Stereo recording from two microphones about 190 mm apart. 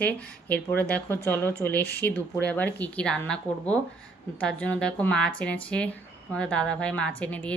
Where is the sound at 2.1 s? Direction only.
10° left (ahead or behind).